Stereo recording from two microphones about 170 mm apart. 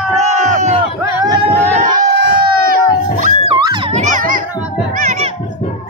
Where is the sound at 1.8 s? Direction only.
55° right (ahead or behind).